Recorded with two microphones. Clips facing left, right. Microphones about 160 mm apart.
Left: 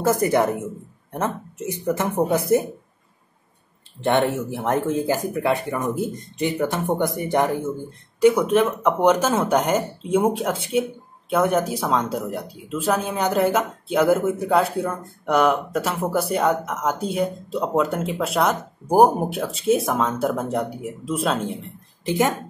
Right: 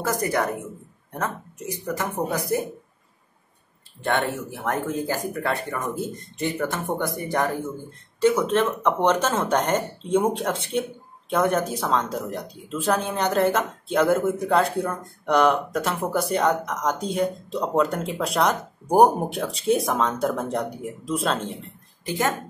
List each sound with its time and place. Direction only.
0.0 s speech: 25° left (ahead or behind)
4.0 s speech: 25° left (ahead or behind); by 21.5 s 5° left (ahead or behind)
22.0 s speech: 20° left (ahead or behind)